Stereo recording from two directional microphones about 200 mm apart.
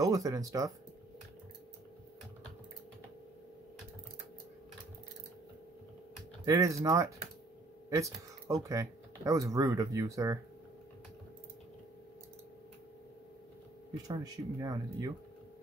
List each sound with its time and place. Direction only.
0.0 s speech: 15° right (ahead or behind)
6.4 s speech: 15° right (ahead or behind)
7.9 s a sound: 15° right (ahead or behind)
8.6 s speech: 15° right (ahead or behind)
14.0 s speech: 20° right (ahead or behind)